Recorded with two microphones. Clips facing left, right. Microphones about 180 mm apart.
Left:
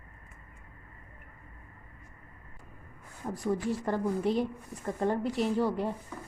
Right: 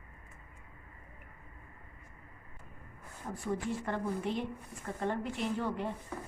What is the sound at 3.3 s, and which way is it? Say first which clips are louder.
A woman's voice: left 5 dB; 35° left (ahead or behind).